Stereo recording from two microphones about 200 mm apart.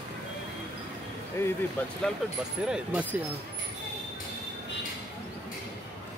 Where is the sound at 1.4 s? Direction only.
10° left (ahead or behind).